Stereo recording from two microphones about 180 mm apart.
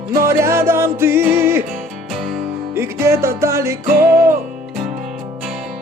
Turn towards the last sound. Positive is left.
turn(degrees=0)  # may be behind; listen again after turning